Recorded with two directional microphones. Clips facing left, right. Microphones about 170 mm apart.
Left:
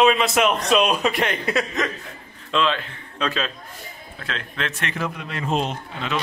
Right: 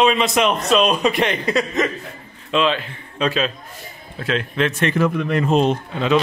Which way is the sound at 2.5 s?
15° right (ahead or behind).